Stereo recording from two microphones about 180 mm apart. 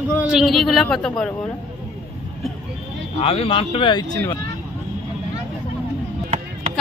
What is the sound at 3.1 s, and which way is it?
Speech, 35° left (ahead or behind).